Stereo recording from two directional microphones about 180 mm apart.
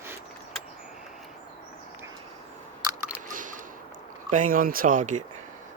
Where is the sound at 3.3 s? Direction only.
45° right (ahead or behind).